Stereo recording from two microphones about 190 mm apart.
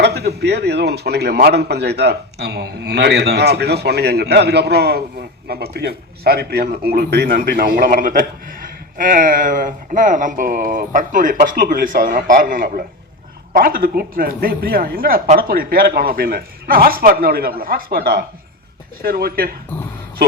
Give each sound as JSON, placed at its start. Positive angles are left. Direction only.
{"t": 0.0, "sound": "a man's voice", "side_deg": -60}